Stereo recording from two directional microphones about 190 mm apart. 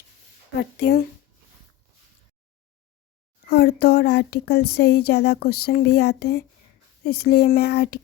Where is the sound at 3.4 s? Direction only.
60° left (ahead or behind).